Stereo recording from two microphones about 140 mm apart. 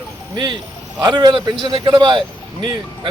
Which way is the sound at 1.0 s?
30° right (ahead or behind).